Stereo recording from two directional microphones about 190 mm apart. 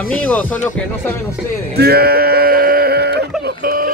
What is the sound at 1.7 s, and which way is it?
Sheep, 55° right (ahead or behind).